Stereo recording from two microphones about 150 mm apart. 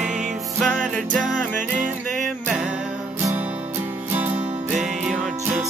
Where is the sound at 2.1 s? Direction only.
Centre (ahead or behind).